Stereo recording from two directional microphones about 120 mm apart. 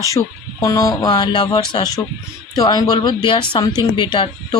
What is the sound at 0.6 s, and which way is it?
Speech, 30° left (ahead or behind).